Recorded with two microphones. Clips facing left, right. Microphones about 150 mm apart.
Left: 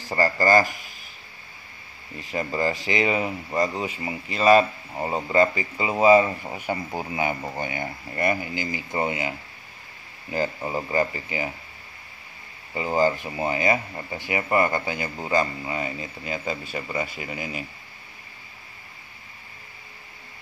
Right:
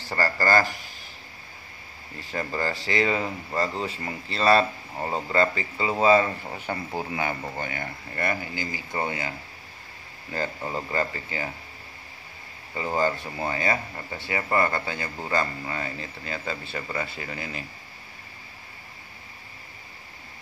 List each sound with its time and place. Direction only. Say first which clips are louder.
0.0 s speech: left 3 dB; 15° left (ahead or behind)
2.1 s speech: left 3 dB; 20° left (ahead or behind)
10.3 s speech: left 4 dB; 15° left (ahead or behind)
12.7 s speech: left 3 dB; 15° left (ahead or behind)